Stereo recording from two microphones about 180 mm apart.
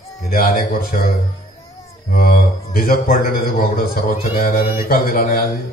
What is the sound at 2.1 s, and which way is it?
A man's voice, 55° left (ahead or behind).